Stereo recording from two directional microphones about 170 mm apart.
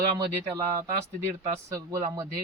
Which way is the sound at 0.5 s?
15° right (ahead or behind).